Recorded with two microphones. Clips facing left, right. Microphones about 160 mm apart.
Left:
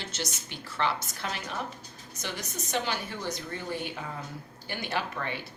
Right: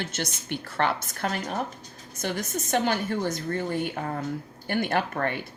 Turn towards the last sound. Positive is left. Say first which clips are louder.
# right 6 dB
turn(degrees=-50)  # may be behind; listen again after turning